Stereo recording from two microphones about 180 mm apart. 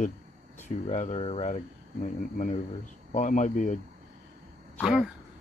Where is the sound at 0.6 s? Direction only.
40° left (ahead or behind).